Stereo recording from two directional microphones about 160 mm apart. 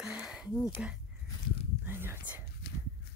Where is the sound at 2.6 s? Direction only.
90° left.